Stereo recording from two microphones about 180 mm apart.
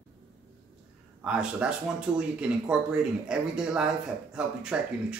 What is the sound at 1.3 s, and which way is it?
Speech, 5° right (ahead or behind).